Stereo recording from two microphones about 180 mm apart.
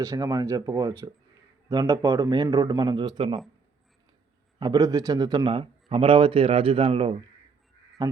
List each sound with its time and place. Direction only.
0.0 s a man's voice: 20° right (ahead or behind)
4.6 s a man's voice: 20° right (ahead or behind)